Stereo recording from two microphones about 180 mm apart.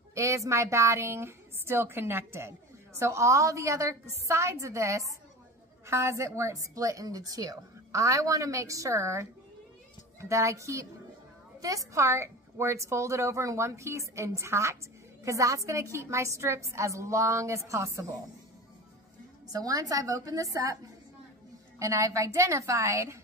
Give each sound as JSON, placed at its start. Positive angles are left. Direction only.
{"t": 0.1, "sound": "a woman's voice", "side_deg": -15}
{"t": 11.9, "sound": "a woman's voice", "side_deg": -15}
{"t": 19.4, "sound": "a woman's voice", "side_deg": -20}
{"t": 21.7, "sound": "a woman's voice", "side_deg": -15}